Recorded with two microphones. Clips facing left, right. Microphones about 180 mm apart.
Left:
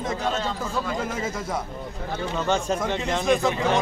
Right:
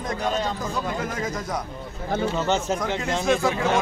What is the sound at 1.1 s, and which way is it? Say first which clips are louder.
Speech: even; 5° left (ahead or behind).